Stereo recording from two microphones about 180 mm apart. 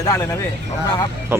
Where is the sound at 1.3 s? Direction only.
15° right (ahead or behind).